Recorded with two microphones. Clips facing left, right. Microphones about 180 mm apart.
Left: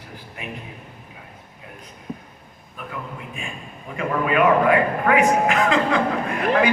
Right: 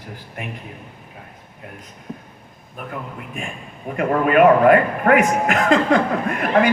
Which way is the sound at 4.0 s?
50° right (ahead or behind).